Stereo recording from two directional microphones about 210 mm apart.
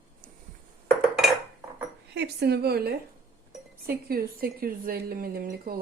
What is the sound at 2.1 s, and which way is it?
Speech, 50° right (ahead or behind).